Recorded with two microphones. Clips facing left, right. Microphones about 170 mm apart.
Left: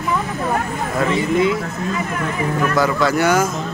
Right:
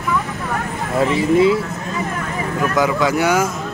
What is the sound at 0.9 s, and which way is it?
Speech, 30° right (ahead or behind).